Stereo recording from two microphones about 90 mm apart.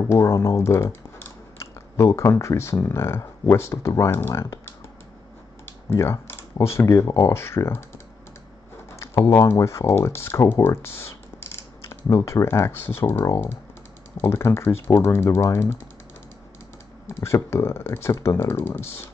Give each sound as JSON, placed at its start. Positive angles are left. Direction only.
{"t": 0.1, "sound": "speech", "side_deg": 30}
{"t": 2.0, "sound": "speech", "side_deg": 30}
{"t": 5.9, "sound": "speech", "side_deg": 30}
{"t": 9.0, "sound": "typing", "side_deg": 25}
{"t": 9.5, "sound": "speech", "side_deg": 35}
{"t": 17.1, "sound": "speech", "side_deg": 30}